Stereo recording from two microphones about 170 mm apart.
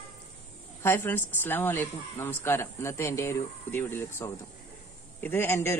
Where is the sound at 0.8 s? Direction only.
15° left (ahead or behind).